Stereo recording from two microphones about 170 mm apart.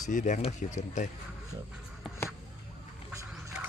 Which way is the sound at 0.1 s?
45° left (ahead or behind).